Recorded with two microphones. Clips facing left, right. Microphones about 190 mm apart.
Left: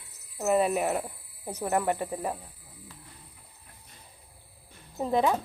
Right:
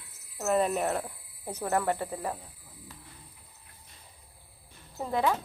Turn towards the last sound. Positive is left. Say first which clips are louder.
# left 3 dB
turn(degrees=20)  # may be behind; listen again after turning